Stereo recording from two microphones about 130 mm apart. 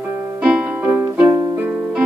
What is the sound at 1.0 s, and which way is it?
Music, 20° right (ahead or behind).